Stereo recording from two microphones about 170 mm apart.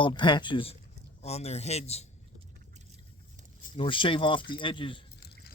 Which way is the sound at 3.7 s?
30° left (ahead or behind).